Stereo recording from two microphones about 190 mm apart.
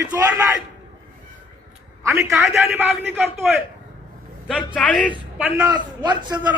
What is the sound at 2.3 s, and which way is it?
A man's voice, centre (ahead or behind).